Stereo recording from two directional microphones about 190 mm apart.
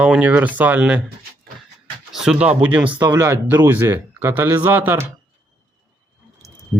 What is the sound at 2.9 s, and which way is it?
Speech, 20° right (ahead or behind).